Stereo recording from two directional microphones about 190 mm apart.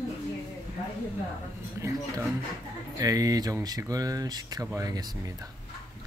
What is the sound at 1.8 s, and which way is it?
Speech, 15° right (ahead or behind).